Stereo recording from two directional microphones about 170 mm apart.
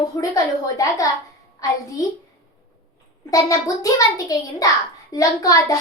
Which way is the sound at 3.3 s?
20° left (ahead or behind).